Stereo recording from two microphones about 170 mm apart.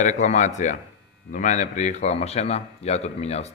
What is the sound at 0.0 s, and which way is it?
A man's voice, 45° left (ahead or behind).